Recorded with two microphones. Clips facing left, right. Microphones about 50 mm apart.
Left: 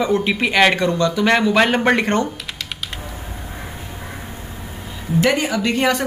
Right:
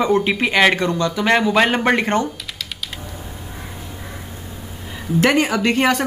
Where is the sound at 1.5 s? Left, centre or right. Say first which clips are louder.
Left 1 dB; centre.